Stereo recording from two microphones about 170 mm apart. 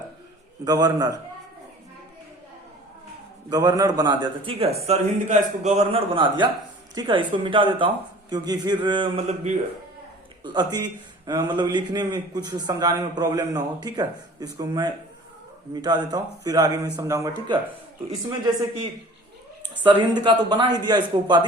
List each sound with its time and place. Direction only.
0.6 s a man's voice: 20° right (ahead or behind)
3.5 s a man's voice: 25° right (ahead or behind); by 6.0 s 45° right (ahead or behind)
6.1 s a man's voice: 30° right (ahead or behind)
10.4 s a man's voice: 25° right (ahead or behind)
20.2 s a man's voice: 25° right (ahead or behind)